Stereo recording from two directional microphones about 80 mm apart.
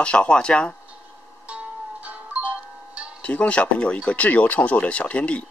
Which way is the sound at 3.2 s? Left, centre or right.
Centre.